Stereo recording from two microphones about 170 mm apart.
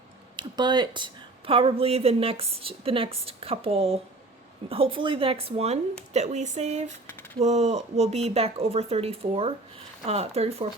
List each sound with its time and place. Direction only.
0.3 s a woman's voice: 25° right (ahead or behind)